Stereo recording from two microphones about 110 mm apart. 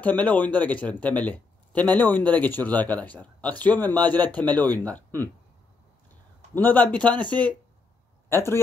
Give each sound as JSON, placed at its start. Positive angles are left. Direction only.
{"t": 0.0, "sound": "speech", "side_deg": 15}
{"t": 6.5, "sound": "speech", "side_deg": 15}